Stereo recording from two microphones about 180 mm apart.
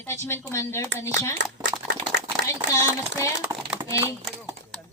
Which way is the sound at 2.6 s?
15° left (ahead or behind).